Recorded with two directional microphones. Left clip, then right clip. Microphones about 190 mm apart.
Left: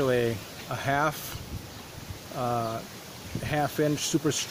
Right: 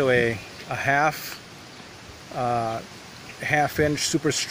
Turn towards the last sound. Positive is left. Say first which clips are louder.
# right 4 dB
turn(degrees=-5)  # may be behind; listen again after turning